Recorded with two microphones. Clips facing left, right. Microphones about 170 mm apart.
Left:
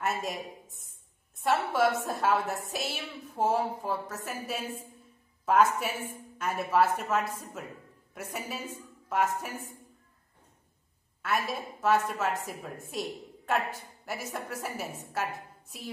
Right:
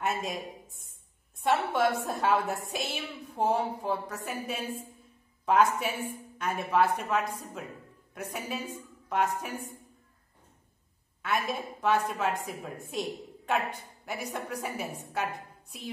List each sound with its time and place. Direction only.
0.0 s a woman's voice: centre (ahead or behind)
11.2 s a woman's voice: 5° left (ahead or behind)